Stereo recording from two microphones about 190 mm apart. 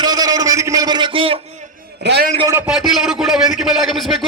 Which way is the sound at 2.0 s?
60° right (ahead or behind).